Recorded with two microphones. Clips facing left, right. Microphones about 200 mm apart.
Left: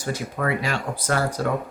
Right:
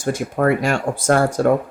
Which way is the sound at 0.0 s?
50° right (ahead or behind).